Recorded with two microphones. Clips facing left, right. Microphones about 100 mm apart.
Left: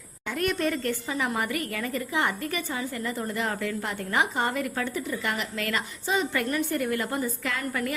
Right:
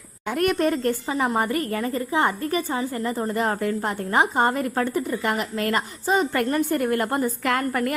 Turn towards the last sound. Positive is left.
turn(degrees=-50)  # may be behind; listen again after turning